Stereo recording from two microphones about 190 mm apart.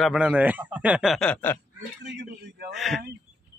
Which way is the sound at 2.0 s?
65° right (ahead or behind).